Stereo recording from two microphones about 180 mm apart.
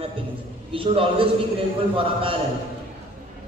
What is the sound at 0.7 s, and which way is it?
Speech, 30° right (ahead or behind).